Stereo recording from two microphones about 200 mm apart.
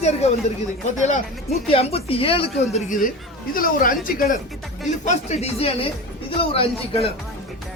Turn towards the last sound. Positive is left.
turn(degrees=30)  # may be behind; listen again after turning